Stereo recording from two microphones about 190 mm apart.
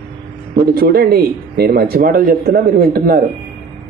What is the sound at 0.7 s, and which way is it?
A man's voice, 55° right (ahead or behind).